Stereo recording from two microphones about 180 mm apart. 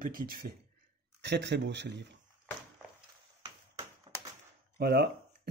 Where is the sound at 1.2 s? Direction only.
70° right (ahead or behind).